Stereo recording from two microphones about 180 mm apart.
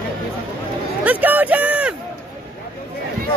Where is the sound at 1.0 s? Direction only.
10° right (ahead or behind).